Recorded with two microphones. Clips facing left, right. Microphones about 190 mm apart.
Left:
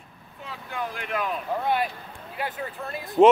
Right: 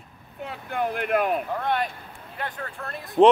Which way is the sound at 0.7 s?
55° right (ahead or behind).